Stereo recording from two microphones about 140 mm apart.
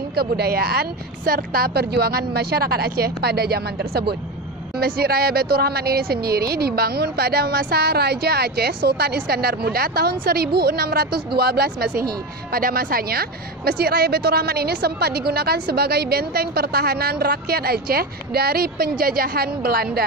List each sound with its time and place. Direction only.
0.2 s a woman's voice: 90° right
4.7 s a woman's voice: 90° right